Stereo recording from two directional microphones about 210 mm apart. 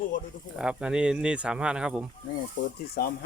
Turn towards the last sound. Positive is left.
turn(degrees=45)  # may be behind; listen again after turning